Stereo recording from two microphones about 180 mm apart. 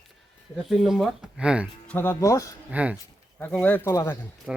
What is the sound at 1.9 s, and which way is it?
Speech, 10° left (ahead or behind).